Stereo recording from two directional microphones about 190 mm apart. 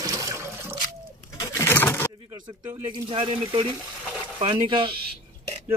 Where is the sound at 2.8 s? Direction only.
25° right (ahead or behind).